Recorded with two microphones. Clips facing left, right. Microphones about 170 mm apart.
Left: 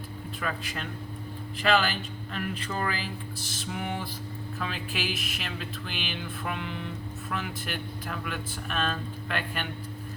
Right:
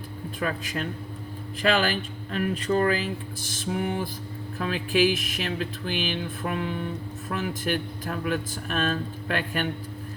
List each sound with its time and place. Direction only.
0.3 s speech: 45° right (ahead or behind)